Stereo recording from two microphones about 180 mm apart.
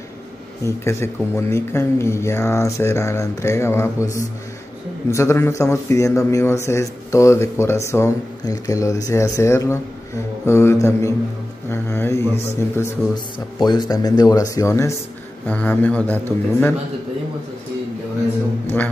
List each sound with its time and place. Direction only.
0.7 s speech: 15° left (ahead or behind)